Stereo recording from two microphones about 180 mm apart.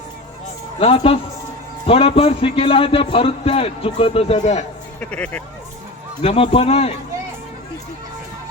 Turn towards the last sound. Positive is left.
turn(degrees=35)  # may be behind; listen again after turning